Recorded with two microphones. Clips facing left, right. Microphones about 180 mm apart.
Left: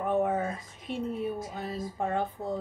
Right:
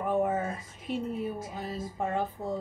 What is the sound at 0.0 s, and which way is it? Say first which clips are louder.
Speech: left 1 dB; 5° right (ahead or behind).